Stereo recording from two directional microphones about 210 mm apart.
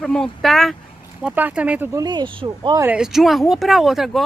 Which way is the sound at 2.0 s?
20° right (ahead or behind).